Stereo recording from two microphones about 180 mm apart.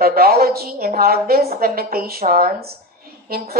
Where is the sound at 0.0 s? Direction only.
55° right (ahead or behind).